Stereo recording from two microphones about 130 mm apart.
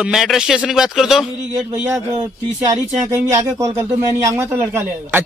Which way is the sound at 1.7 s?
20° right (ahead or behind).